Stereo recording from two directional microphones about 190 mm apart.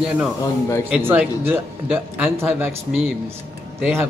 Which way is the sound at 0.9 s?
10° right (ahead or behind).